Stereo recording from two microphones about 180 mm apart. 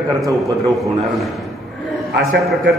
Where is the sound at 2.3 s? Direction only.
Centre (ahead or behind).